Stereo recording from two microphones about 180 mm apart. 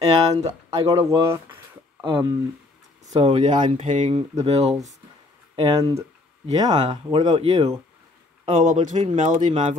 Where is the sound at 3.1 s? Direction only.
30° right (ahead or behind).